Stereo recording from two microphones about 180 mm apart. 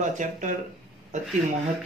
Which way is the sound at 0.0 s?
45° right (ahead or behind).